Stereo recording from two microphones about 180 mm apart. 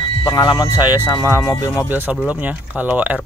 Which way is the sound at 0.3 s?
25° left (ahead or behind).